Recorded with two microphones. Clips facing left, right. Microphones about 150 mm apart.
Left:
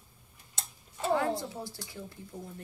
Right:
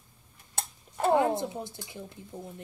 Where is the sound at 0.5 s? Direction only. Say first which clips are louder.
Right 8 dB; 55° right (ahead or behind).